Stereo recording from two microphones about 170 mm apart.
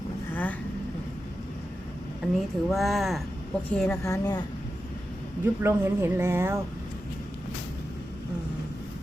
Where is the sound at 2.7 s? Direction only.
Centre (ahead or behind); by 4.4 s 20° left (ahead or behind).